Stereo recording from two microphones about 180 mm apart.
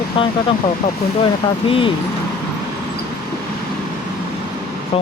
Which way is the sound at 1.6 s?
30° left (ahead or behind).